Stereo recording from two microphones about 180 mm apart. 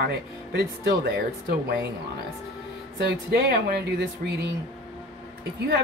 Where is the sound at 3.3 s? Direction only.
60° right (ahead or behind).